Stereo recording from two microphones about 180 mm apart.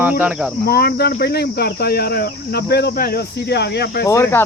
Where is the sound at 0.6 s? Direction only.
60° left (ahead or behind).